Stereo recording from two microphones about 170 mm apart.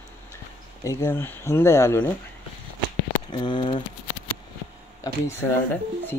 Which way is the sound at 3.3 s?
25° left (ahead or behind).